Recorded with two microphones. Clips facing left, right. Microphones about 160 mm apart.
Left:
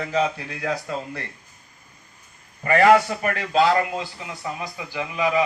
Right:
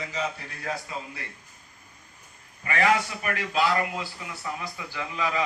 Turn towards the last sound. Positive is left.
turn(degrees=15)  # may be behind; listen again after turning